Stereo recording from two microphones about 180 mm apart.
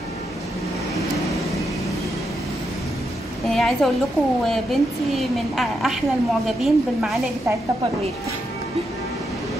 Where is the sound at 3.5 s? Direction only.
Centre (ahead or behind).